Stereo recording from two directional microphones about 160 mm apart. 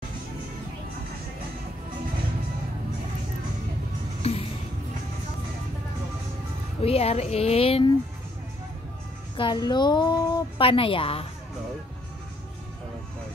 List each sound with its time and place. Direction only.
4.2 s music: 40° left (ahead or behind)
6.8 s speech: 40° left (ahead or behind)
9.4 s a woman's voice: 30° left (ahead or behind)